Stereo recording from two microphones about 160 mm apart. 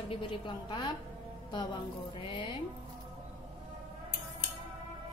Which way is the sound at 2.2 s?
30° left (ahead or behind).